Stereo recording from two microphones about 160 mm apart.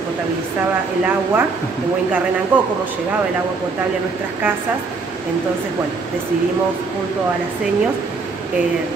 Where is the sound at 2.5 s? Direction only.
10° right (ahead or behind).